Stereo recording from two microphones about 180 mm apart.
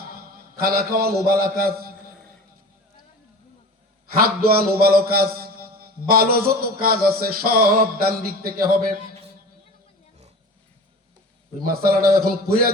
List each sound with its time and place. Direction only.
0.1 s a man's voice: 55° right (ahead or behind)
4.2 s a man's voice: 55° right (ahead or behind)
11.6 s a man's voice: 55° right (ahead or behind)